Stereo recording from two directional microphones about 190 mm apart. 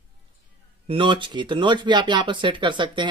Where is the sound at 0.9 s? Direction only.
25° right (ahead or behind).